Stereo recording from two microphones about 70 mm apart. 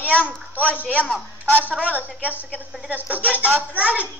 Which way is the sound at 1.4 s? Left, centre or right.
Right.